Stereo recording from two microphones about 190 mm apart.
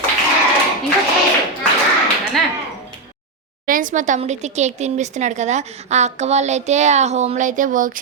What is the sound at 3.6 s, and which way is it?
Speech, 45° right (ahead or behind).